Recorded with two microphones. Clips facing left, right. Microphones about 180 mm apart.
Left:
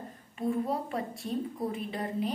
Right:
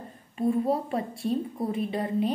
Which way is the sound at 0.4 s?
25° right (ahead or behind).